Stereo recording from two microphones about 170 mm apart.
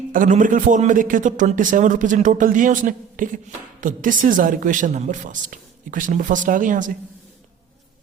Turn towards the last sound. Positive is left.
turn(degrees=-50)  # may be behind; listen again after turning